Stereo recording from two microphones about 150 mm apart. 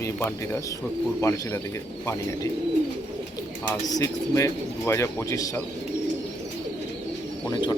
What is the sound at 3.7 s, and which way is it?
Speech, 20° left (ahead or behind).